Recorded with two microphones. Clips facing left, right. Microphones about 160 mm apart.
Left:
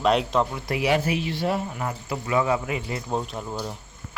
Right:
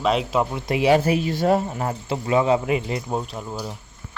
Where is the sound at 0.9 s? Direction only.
40° right (ahead or behind); by 3.0 s 20° right (ahead or behind).